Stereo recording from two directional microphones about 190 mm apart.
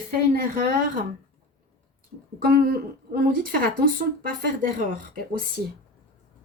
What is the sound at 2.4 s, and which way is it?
A woman's voice, 50° right (ahead or behind).